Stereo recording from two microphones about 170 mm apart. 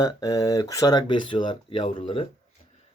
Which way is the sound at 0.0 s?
20° left (ahead or behind).